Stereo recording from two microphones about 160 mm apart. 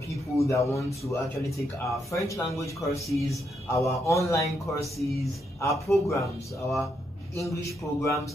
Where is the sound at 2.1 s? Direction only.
20° left (ahead or behind).